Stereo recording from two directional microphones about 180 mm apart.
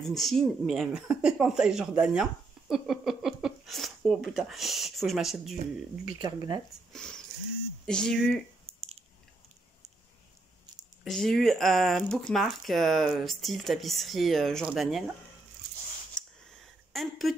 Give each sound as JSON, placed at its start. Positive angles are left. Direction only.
{"t": 0.0, "sound": "speech", "side_deg": 0}
{"t": 6.1, "sound": "speech", "side_deg": -20}
{"t": 6.9, "sound": "speech", "side_deg": 5}
{"t": 11.1, "sound": "speech", "side_deg": 0}
{"t": 16.2, "sound": "a sound", "side_deg": 0}